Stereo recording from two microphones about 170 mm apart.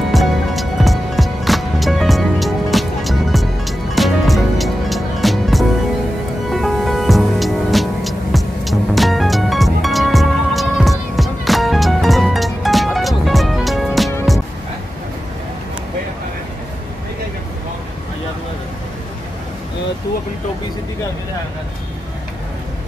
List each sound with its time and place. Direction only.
0.1 s music: centre (ahead or behind)